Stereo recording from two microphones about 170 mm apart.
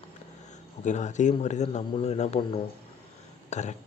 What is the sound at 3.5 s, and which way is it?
Speech, 45° left (ahead or behind).